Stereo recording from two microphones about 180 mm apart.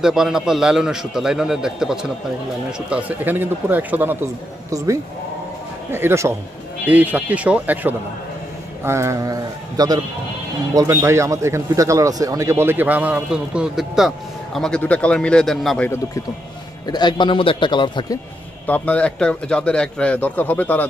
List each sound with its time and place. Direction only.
0.0 s a man's voice: 5° right (ahead or behind)
16.8 s a man's voice: 25° left (ahead or behind)
18.7 s a man's voice: 5° left (ahead or behind)